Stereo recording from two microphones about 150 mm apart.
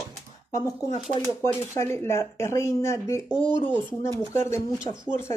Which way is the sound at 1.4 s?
15° left (ahead or behind).